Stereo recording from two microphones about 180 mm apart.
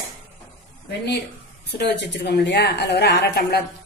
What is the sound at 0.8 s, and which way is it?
A woman's voice, 70° left (ahead or behind).